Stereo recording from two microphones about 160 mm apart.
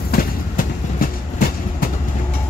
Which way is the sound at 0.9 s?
60° left (ahead or behind).